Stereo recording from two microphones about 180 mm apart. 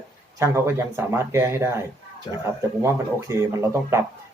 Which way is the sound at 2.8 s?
15° right (ahead or behind).